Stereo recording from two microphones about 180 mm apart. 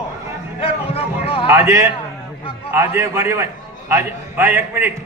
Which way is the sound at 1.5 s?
15° right (ahead or behind).